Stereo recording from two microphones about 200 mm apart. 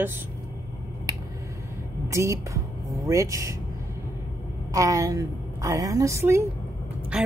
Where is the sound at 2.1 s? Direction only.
15° right (ahead or behind).